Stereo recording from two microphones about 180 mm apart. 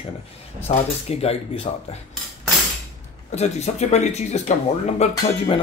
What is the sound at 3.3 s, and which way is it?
Speech, 40° left (ahead or behind).